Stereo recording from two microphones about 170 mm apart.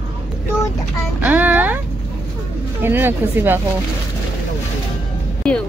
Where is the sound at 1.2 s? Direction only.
10° right (ahead or behind).